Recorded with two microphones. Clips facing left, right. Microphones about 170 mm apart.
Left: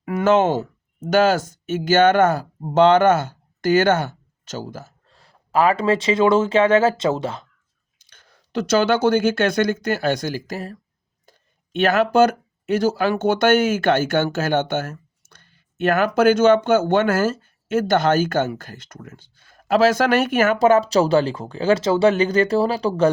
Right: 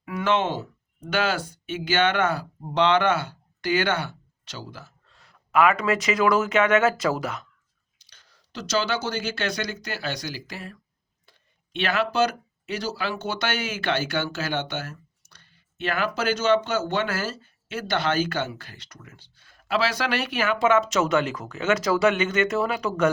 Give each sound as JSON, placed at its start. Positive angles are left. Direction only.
{"t": 0.0, "sound": "speech", "side_deg": 50}
{"t": 7.9, "sound": "speech", "side_deg": 50}